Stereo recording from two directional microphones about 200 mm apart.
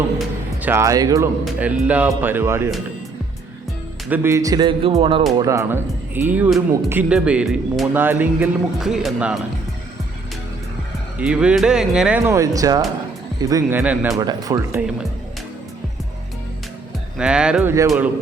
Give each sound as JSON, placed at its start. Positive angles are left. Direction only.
{"t": 0.2, "sound": "speech", "side_deg": -10}
{"t": 4.1, "sound": "speech", "side_deg": -10}
{"t": 5.4, "sound": "speech", "side_deg": -15}
{"t": 11.2, "sound": "speech", "side_deg": -5}
{"t": 17.2, "sound": "speech", "side_deg": -5}